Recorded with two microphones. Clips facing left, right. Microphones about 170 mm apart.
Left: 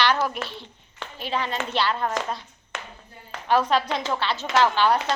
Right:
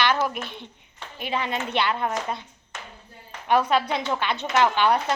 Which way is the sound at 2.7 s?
90° left.